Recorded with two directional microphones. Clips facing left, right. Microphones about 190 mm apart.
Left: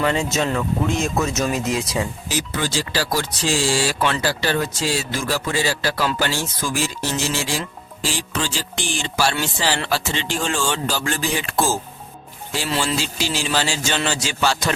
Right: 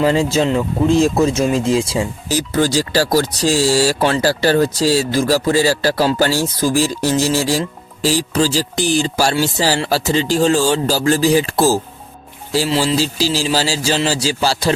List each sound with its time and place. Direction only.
0.0 s speech: 30° right (ahead or behind)